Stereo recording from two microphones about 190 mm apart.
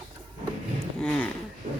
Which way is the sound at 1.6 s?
40° right (ahead or behind).